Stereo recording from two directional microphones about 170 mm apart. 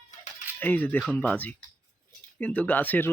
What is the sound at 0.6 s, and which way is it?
Speech, 10° left (ahead or behind).